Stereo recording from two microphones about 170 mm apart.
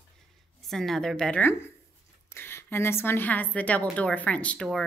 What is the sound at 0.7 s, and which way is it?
A woman's voice, centre (ahead or behind).